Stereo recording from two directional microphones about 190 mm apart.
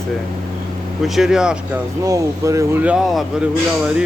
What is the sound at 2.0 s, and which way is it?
Speech, 15° right (ahead or behind).